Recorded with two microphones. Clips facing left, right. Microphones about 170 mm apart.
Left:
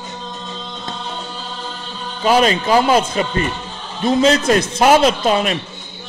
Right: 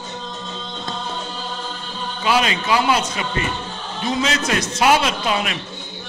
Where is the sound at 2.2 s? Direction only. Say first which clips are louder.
Left 6 dB; 40° left (ahead or behind).